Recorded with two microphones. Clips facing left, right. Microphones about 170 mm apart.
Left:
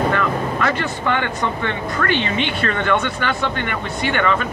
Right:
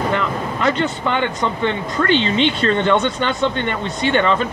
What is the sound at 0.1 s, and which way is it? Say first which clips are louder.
Speech: left 1 dB; 20° right (ahead or behind).